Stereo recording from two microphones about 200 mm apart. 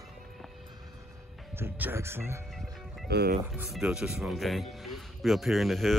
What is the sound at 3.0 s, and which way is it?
Speech, 50° right (ahead or behind).